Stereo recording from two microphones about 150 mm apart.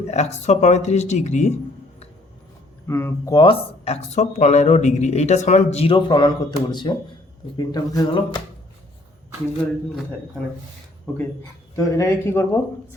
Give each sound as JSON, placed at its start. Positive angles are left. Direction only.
{"t": 0.1, "sound": "speech", "side_deg": 50}
{"t": 2.8, "sound": "speech", "side_deg": 15}
{"t": 3.4, "sound": "speech", "side_deg": 40}
{"t": 11.1, "sound": "speech", "side_deg": 10}